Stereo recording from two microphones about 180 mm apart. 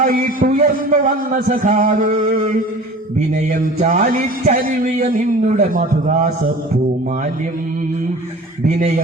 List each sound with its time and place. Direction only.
0.0 s a man's voice: 50° right (ahead or behind)
3.8 s a man's voice: 40° right (ahead or behind)
8.6 s a man's voice: 50° right (ahead or behind)